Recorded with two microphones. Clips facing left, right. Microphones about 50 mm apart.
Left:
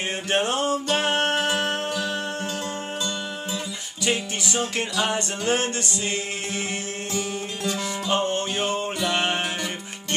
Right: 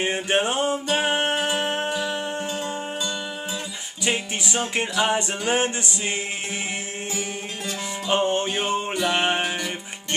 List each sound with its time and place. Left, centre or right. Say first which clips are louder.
0.0 s music: right 2 dB; right
4.0 s music: even; centre
8.1 s music: right 3 dB; right